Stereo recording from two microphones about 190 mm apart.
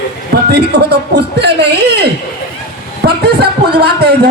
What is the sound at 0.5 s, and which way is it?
Speech, 60° right (ahead or behind).